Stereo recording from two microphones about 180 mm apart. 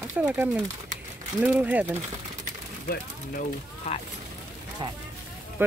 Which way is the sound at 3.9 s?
35° left (ahead or behind).